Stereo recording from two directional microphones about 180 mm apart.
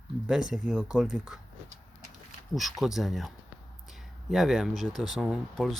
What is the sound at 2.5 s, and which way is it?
Speech, centre (ahead or behind).